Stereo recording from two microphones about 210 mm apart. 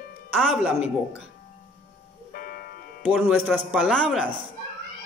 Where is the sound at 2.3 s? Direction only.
45° left (ahead or behind).